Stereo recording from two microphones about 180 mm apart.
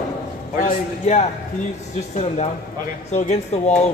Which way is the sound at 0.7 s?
40° left (ahead or behind).